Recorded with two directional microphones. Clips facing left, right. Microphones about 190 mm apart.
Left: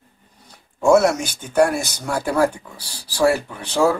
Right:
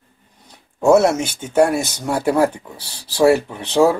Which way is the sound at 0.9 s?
25° right (ahead or behind).